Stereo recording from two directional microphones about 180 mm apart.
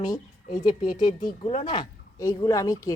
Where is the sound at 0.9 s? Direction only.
20° left (ahead or behind).